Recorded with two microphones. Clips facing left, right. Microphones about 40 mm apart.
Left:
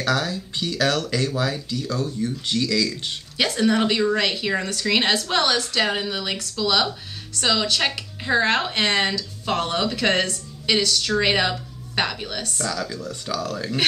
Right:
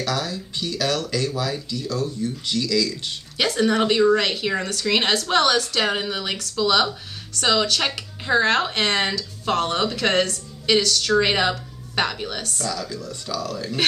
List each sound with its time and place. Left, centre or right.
0.0 s speech: left
3.3 s a woman's voice: centre
12.9 s speech: left